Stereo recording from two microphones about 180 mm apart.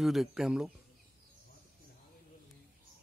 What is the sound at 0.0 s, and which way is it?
Speech, centre (ahead or behind).